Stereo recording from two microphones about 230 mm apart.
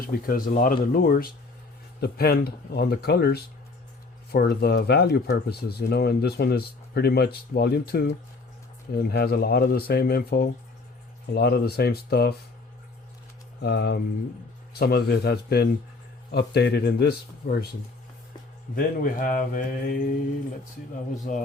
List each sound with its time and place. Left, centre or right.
0.1 s speech: left
13.6 s speech: left
18.8 s speech: left
21.3 s speech: left